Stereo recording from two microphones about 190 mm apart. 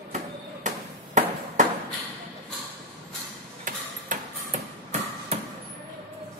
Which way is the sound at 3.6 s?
45° right (ahead or behind).